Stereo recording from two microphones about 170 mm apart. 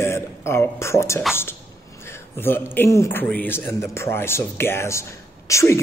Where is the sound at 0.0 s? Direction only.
15° left (ahead or behind).